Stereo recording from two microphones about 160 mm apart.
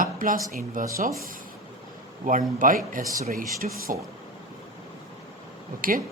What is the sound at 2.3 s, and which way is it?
A man's voice, 55° right (ahead or behind).